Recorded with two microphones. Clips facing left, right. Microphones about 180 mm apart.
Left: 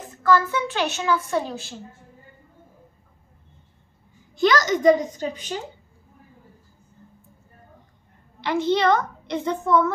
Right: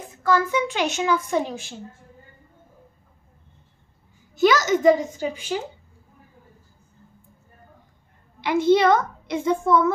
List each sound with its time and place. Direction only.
0.2 s a woman's voice: 15° right (ahead or behind)
4.4 s a woman's voice: 5° right (ahead or behind)
8.4 s a woman's voice: 10° right (ahead or behind)